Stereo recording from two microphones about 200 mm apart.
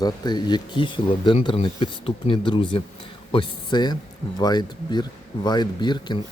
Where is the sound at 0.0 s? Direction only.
20° left (ahead or behind).